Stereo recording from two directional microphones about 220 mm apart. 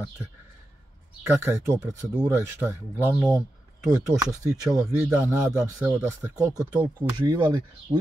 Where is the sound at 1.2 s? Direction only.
10° right (ahead or behind).